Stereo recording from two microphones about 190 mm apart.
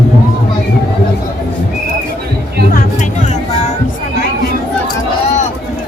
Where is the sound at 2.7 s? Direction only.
40° left (ahead or behind).